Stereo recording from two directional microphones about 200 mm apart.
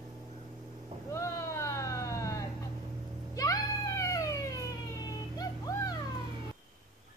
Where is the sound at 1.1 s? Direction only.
15° left (ahead or behind).